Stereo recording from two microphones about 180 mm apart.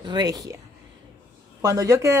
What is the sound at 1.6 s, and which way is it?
Speech, 20° right (ahead or behind).